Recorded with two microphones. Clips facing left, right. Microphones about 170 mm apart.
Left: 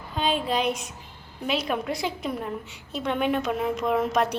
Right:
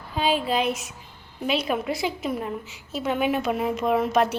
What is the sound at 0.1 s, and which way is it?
A woman's voice, 5° right (ahead or behind).